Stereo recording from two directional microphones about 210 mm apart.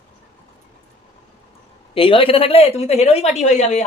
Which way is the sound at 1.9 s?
25° left (ahead or behind).